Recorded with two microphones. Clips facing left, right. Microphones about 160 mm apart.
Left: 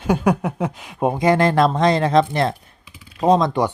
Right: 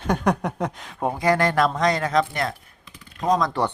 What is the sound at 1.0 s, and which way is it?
Speech, 20° left (ahead or behind).